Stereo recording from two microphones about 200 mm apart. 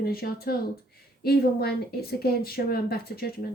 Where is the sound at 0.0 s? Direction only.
50° left (ahead or behind).